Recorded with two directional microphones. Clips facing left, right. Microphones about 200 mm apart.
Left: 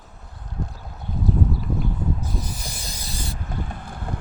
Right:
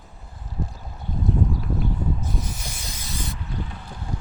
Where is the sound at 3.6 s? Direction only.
50° left (ahead or behind).